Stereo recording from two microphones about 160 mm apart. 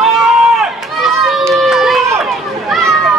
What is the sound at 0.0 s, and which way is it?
Run, centre (ahead or behind).